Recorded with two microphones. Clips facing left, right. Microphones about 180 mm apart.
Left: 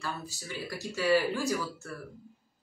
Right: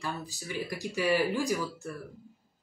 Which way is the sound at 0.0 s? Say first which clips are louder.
Right 1 dB; 15° right (ahead or behind).